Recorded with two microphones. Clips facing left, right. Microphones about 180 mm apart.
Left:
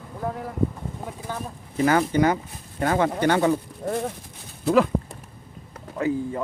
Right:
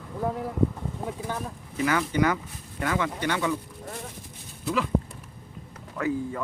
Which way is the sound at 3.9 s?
60° left (ahead or behind).